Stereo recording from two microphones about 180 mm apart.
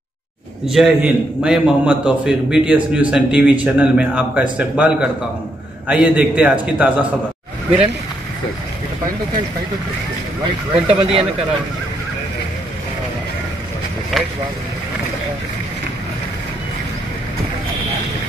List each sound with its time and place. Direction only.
0.7 s a man's voice: centre (ahead or behind)
10.7 s speech: 30° right (ahead or behind)
14.2 s speech: centre (ahead or behind)